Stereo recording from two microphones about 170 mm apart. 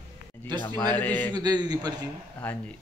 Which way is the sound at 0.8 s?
10° left (ahead or behind).